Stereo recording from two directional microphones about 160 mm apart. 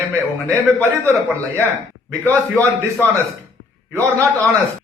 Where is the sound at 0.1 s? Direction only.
15° right (ahead or behind).